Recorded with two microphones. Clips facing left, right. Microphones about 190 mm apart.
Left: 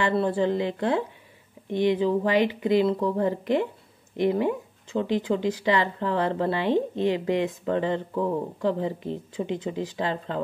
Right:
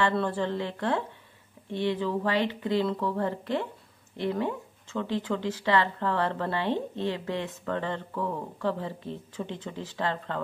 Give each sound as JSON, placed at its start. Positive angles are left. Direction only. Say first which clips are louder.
{"t": 0.3, "sound": "speech", "louder": "left 6 dB", "side_deg": 15}
{"t": 8.1, "sound": "speech", "louder": "left 6 dB", "side_deg": 30}
{"t": 8.6, "sound": "speech", "louder": "left 4 dB", "side_deg": 15}